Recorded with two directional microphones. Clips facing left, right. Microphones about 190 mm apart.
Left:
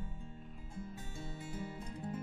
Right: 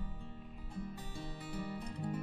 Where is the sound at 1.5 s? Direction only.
65° right (ahead or behind).